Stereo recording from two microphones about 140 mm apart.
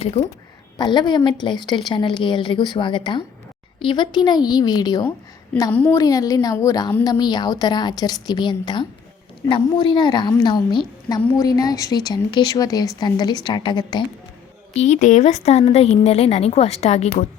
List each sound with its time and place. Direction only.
0.8 s a woman's voice: 30° left (ahead or behind)
5.7 s a woman's voice: 15° left (ahead or behind); by 14.0 s 30° left (ahead or behind)
14.7 s a woman's voice: 55° left (ahead or behind)